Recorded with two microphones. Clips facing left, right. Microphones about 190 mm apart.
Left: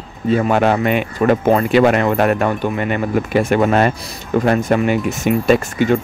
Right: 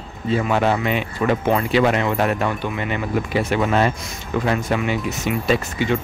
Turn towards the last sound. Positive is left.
turn(degrees=50)  # may be behind; listen again after turning